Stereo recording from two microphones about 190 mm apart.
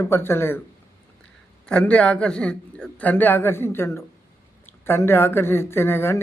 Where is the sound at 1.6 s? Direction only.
5° left (ahead or behind).